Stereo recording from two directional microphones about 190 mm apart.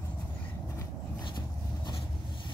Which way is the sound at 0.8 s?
25° left (ahead or behind).